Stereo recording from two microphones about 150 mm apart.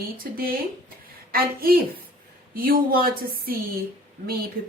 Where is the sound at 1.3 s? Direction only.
80° right.